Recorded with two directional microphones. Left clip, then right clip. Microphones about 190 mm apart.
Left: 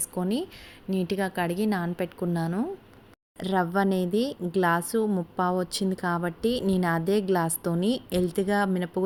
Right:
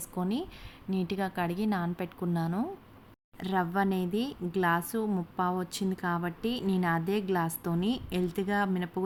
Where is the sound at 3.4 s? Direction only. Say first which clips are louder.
Left 4 dB; 15° left (ahead or behind).